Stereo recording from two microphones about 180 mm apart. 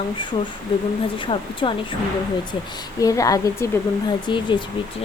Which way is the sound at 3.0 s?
20° left (ahead or behind).